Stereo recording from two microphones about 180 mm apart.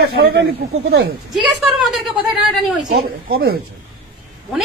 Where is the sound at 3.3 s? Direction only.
55° right (ahead or behind).